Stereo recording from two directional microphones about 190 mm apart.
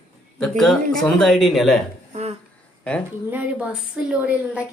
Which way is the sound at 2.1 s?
35° right (ahead or behind).